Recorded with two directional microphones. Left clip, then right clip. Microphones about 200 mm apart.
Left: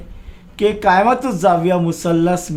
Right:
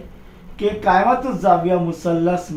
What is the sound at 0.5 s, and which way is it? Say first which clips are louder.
Speech: left 3 dB; 60° left (ahead or behind).